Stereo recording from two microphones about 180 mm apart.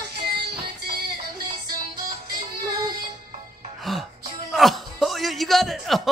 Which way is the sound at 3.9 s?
Centre (ahead or behind).